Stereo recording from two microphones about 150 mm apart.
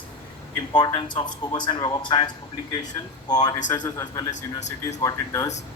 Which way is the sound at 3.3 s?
25° left (ahead or behind).